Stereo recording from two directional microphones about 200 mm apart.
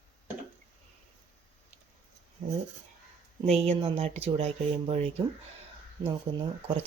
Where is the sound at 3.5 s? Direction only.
35° right (ahead or behind).